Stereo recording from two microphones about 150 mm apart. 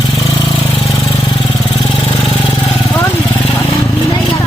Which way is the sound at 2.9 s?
15° left (ahead or behind).